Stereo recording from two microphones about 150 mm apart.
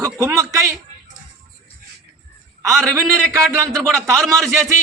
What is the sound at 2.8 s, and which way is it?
Speech, 20° right (ahead or behind).